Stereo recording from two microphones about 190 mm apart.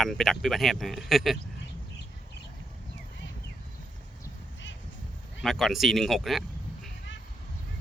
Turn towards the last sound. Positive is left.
turn(degrees=0)  # may be behind; listen again after turning